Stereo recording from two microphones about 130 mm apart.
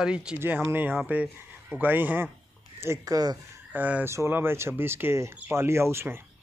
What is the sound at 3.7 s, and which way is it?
Speech, 15° right (ahead or behind).